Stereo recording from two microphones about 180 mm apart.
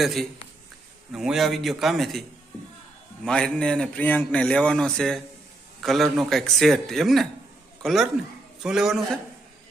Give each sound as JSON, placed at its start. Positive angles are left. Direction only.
{"t": 0.0, "sound": "a man's voice", "side_deg": 0}
{"t": 3.2, "sound": "a man's voice", "side_deg": 5}